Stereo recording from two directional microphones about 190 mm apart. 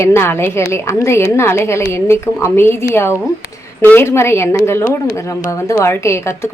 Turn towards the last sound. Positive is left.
turn(degrees=15)  # may be behind; listen again after turning